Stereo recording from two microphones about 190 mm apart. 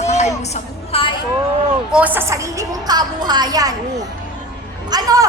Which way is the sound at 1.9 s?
10° right (ahead or behind).